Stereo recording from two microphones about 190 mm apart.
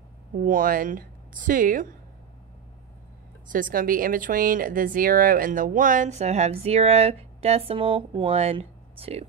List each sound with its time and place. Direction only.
0.4 s a woman's voice: 45° right (ahead or behind)
3.5 s speech: 45° right (ahead or behind)